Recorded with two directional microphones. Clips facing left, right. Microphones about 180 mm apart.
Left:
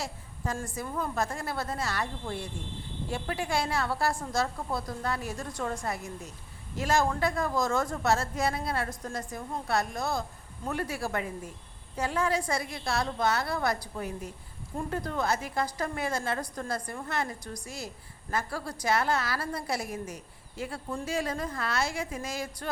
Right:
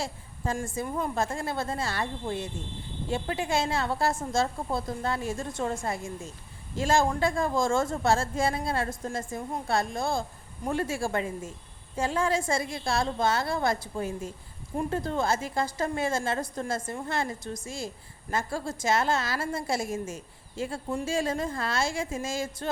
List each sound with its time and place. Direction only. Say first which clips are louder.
0.0 s a woman's voice: right 3 dB; 30° right (ahead or behind)